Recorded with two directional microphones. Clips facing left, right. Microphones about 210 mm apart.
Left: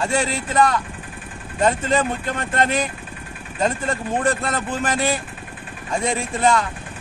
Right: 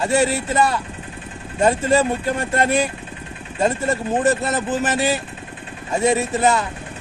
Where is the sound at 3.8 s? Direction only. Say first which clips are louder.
Right 3 dB; 25° right (ahead or behind).